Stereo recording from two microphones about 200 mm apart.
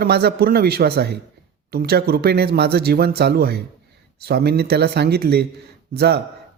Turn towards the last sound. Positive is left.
turn(degrees=-55)  # may be behind; listen again after turning